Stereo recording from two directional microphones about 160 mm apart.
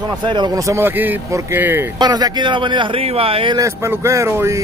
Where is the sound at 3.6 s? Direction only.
15° right (ahead or behind).